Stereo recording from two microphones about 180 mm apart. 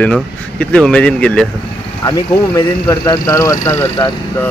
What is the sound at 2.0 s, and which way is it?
Speech, 20° left (ahead or behind).